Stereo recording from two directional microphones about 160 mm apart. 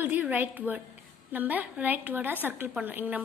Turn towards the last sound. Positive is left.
turn(degrees=-10)  # may be behind; listen again after turning